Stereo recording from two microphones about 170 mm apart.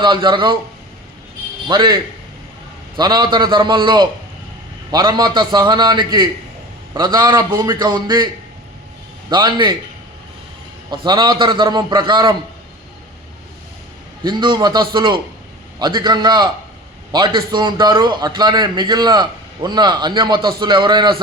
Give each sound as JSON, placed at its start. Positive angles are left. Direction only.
{"t": 0.0, "sound": "a man's voice", "side_deg": -25}
{"t": 1.6, "sound": "a man's voice", "side_deg": -25}
{"t": 3.0, "sound": "a man's voice", "side_deg": -25}
{"t": 9.3, "sound": "a man's voice", "side_deg": -25}
{"t": 10.9, "sound": "a man's voice", "side_deg": -25}
{"t": 14.3, "sound": "a man's voice", "side_deg": -25}